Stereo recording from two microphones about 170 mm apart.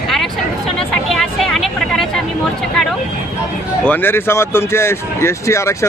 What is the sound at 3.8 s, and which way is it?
Speech, 10° left (ahead or behind).